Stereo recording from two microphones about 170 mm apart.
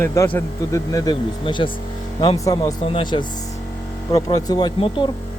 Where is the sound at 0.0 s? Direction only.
15° left (ahead or behind).